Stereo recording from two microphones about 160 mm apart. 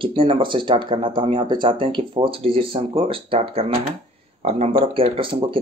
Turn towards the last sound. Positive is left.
turn(degrees=-35)  # may be behind; listen again after turning